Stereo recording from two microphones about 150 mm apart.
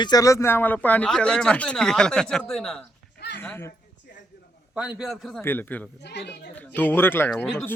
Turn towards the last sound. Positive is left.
turn(degrees=5)  # may be behind; listen again after turning